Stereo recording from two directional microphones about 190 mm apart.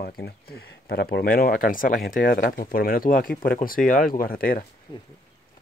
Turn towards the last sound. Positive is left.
turn(degrees=25)  # may be behind; listen again after turning